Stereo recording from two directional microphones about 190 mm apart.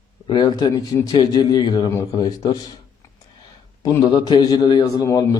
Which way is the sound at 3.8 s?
20° left (ahead or behind).